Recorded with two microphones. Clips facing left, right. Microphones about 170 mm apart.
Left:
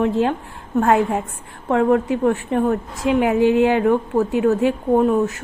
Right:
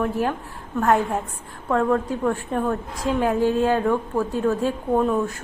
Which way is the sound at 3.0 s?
15° left (ahead or behind).